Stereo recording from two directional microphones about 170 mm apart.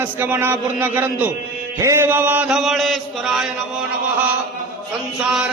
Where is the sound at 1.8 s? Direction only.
15° right (ahead or behind); by 3.4 s centre (ahead or behind).